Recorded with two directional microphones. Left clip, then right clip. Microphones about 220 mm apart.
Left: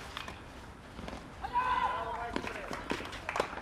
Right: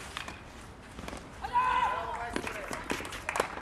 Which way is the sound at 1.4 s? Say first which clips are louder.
Right 3 dB; 40° right (ahead or behind).